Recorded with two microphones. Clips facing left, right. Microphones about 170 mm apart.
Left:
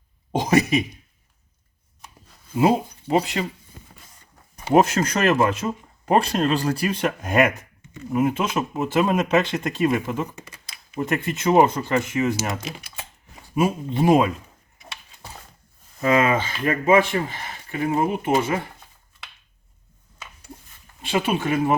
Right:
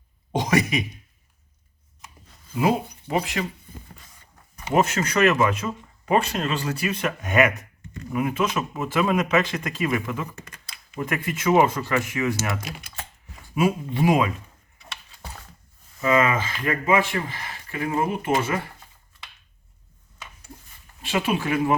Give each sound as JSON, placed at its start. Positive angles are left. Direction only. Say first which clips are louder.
{"t": 0.3, "sound": "speech", "louder": "left 3 dB", "side_deg": 25}
{"t": 2.6, "sound": "speech", "louder": "left 3 dB", "side_deg": 25}
{"t": 4.7, "sound": "speech", "louder": "left 4 dB", "side_deg": 40}
{"t": 10.3, "sound": "computer keyboard", "louder": "left 1 dB", "side_deg": 10}
{"t": 11.0, "sound": "speech", "louder": "left 2 dB", "side_deg": 25}
{"t": 16.0, "sound": "speech", "louder": "left 2 dB", "side_deg": 35}
{"t": 21.2, "sound": "speech", "louder": "left 1 dB", "side_deg": 25}